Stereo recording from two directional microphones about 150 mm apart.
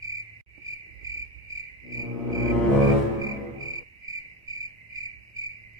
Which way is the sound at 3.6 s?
25° right (ahead or behind).